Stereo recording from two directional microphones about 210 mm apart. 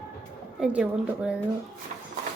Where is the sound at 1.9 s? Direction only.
35° right (ahead or behind).